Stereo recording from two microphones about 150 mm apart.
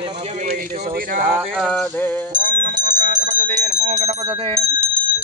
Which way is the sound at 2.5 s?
70° right (ahead or behind).